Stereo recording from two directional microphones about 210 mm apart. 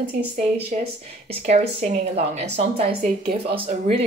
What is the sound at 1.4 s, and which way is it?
Speech, 30° right (ahead or behind).